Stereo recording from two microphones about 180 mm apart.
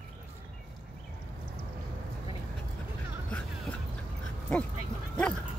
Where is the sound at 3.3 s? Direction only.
5° left (ahead or behind).